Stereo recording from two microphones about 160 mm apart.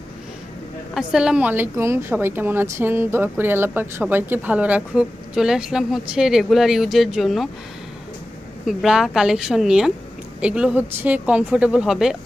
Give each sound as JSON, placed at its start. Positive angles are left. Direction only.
{"t": 0.9, "sound": "a woman's voice", "side_deg": -5}
{"t": 8.6, "sound": "a woman's voice", "side_deg": 0}